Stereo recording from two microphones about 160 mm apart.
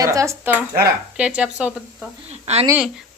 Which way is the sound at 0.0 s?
20° right (ahead or behind).